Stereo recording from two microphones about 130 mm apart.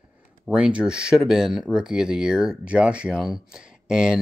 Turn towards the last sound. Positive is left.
turn(degrees=-5)  # may be behind; listen again after turning